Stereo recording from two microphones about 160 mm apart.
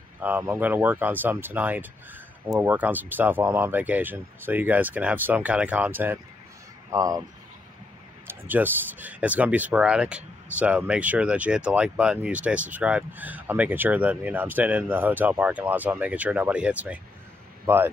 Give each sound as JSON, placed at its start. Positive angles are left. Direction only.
{"t": 0.2, "sound": "speech", "side_deg": -10}
{"t": 8.3, "sound": "speech", "side_deg": -10}